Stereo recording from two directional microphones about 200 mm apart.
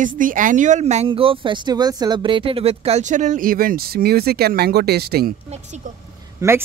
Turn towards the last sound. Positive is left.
turn(degrees=-15)  # may be behind; listen again after turning